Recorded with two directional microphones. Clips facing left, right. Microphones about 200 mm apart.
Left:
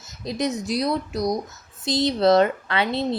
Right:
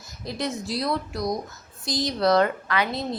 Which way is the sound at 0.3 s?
20° left (ahead or behind).